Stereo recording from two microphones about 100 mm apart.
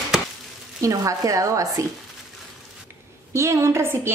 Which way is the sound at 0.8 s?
35° right (ahead or behind).